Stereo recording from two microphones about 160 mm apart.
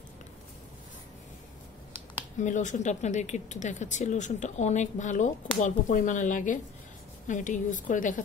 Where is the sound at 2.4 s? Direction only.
50° left (ahead or behind).